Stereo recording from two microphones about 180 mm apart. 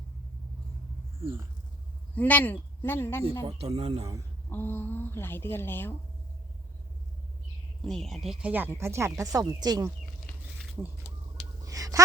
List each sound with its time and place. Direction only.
2.1 s a woman's voice: 10° left (ahead or behind)
3.4 s speech: 35° right (ahead or behind)
4.4 s a woman's voice: 10° left (ahead or behind)
7.9 s speech: centre (ahead or behind); by 9.9 s 20° right (ahead or behind)
10.8 s speech: 5° right (ahead or behind)
11.6 s a sound: 20° right (ahead or behind)